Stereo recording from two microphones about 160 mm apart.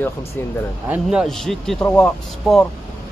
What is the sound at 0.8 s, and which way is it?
Speech, 10° right (ahead or behind).